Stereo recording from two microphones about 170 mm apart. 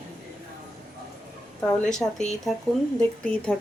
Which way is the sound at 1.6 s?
10° left (ahead or behind).